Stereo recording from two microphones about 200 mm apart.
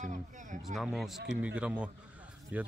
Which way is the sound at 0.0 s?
40° right (ahead or behind).